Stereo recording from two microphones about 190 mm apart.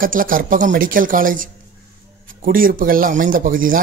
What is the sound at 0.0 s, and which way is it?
Speech, 45° right (ahead or behind).